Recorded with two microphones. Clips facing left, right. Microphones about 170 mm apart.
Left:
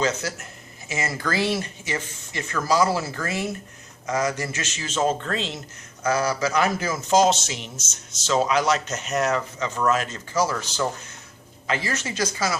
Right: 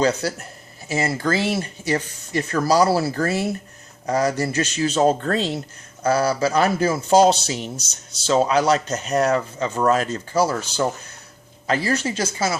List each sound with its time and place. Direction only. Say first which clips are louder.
0.0 s a man's voice: right 5 dB; 35° right (ahead or behind)